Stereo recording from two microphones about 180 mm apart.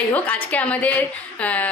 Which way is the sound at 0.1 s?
10° left (ahead or behind).